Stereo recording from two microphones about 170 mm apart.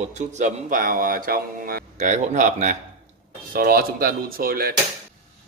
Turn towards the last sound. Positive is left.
turn(degrees=-60)  # may be behind; listen again after turning